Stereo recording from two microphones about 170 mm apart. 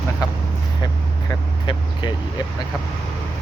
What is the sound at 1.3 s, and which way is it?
Vehicle, 25° left (ahead or behind).